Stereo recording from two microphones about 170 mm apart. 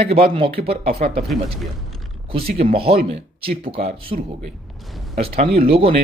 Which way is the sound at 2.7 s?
35° right (ahead or behind).